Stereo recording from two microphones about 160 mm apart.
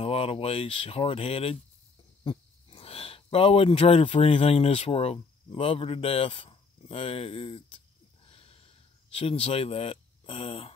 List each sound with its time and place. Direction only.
0.0 s speech: 40° left (ahead or behind)
8.3 s a sound: 35° left (ahead or behind)
9.1 s speech: 35° left (ahead or behind)